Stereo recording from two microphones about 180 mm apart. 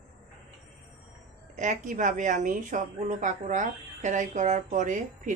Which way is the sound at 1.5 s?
45° right (ahead or behind).